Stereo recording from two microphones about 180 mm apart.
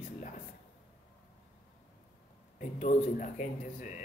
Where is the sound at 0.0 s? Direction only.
45° left (ahead or behind).